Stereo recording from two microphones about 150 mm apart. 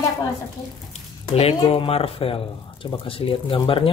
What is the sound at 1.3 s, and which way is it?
Speech, 40° left (ahead or behind).